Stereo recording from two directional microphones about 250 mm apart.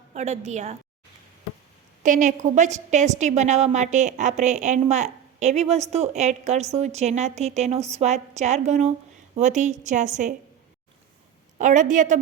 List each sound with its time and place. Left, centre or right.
0.1 s a woman's voice: right
2.0 s a woman's voice: right
11.5 s a woman's voice: right